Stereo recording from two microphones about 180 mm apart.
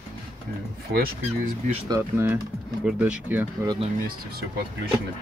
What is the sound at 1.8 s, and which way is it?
Speech, 20° right (ahead or behind).